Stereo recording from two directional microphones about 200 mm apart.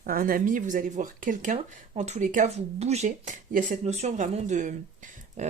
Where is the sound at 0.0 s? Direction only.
45° right (ahead or behind).